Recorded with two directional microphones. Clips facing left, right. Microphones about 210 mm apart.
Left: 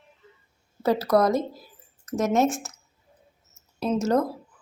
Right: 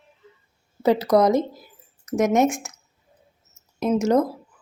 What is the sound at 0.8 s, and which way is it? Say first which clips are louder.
Speech: right 3 dB; 20° right (ahead or behind).